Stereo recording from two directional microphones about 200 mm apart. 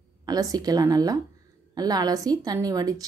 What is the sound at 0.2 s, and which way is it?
A woman's voice, 20° right (ahead or behind).